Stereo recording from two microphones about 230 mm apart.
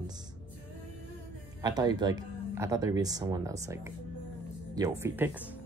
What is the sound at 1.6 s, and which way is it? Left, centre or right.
Speech, centre.